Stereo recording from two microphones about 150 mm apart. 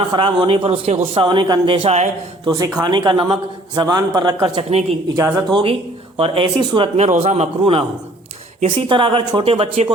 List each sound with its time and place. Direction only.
0.1 s a man's voice: 35° right (ahead or behind)